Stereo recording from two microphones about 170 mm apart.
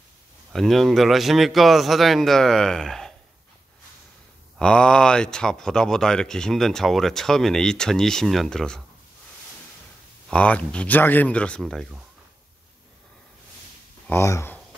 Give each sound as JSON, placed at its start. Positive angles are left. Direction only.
{"t": 0.5, "sound": "speech", "side_deg": 0}
{"t": 4.6, "sound": "speech", "side_deg": 5}
{"t": 10.3, "sound": "speech", "side_deg": 5}
{"t": 14.0, "sound": "speech", "side_deg": 15}